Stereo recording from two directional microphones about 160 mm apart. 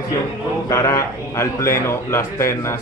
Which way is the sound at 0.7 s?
20° left (ahead or behind).